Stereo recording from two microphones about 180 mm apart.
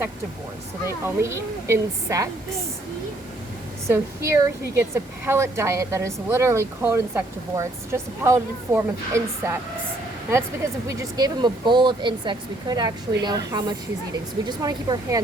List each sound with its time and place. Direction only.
1.0 s a woman's voice: 15° right (ahead or behind)
3.8 s a woman's voice: 15° right (ahead or behind)
10.8 s speech: 20° right (ahead or behind)